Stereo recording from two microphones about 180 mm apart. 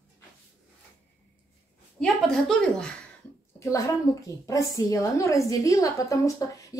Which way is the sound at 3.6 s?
15° left (ahead or behind).